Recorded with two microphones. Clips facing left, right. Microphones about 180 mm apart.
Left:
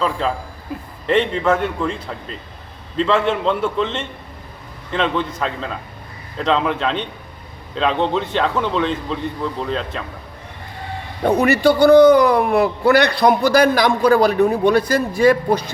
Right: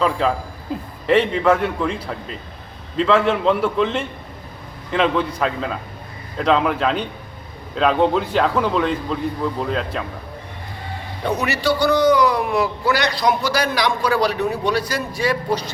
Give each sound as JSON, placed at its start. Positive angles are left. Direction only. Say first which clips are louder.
{"t": 0.7, "sound": "a man's voice", "louder": "right 3 dB", "side_deg": -25}
{"t": 1.0, "sound": "a man's voice", "louder": "right 1 dB", "side_deg": -5}
{"t": 3.0, "sound": "a man's voice", "louder": "right 1 dB", "side_deg": -5}
{"t": 4.9, "sound": "a man's voice", "louder": "right 2 dB", "side_deg": -5}
{"t": 11.2, "sound": "a man's voice", "louder": "left 7 dB", "side_deg": 55}